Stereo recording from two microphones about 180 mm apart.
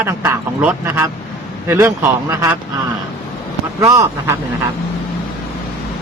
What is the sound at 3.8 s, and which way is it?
Speech, 15° right (ahead or behind).